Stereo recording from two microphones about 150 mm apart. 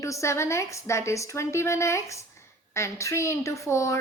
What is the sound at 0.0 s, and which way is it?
A woman's voice, 20° left (ahead or behind).